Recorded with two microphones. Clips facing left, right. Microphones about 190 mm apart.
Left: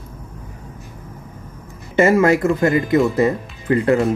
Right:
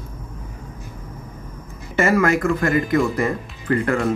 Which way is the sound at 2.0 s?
25° left (ahead or behind).